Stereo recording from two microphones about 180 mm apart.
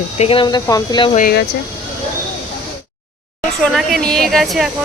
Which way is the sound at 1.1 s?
50° left (ahead or behind).